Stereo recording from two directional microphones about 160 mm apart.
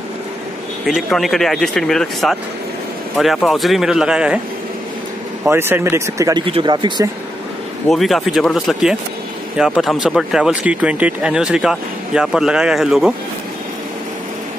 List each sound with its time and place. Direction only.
0.8 s speech: centre (ahead or behind)
5.4 s speech: 15° right (ahead or behind)
6.4 s speech: 30° right (ahead or behind)
7.9 s speech: centre (ahead or behind)